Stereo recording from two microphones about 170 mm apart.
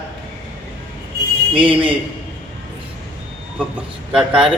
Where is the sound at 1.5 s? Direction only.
30° right (ahead or behind).